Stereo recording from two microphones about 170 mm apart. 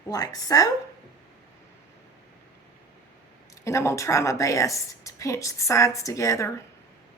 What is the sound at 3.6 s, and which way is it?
A woman's voice, 15° left (ahead or behind).